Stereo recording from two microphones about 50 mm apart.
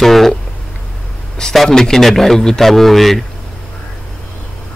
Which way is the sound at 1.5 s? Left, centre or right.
Centre.